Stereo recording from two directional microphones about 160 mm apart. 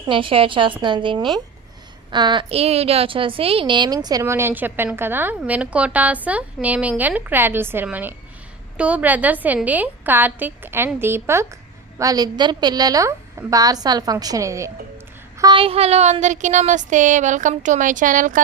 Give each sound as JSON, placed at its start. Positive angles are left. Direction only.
{"t": 0.1, "sound": "a woman's voice", "side_deg": -35}
{"t": 15.4, "sound": "speech", "side_deg": -30}